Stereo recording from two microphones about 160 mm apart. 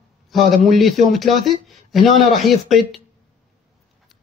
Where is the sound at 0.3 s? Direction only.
Centre (ahead or behind).